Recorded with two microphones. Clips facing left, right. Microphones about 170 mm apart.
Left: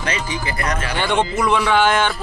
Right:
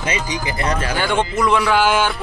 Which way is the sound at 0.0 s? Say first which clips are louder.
Right 1 dB; 20° right (ahead or behind).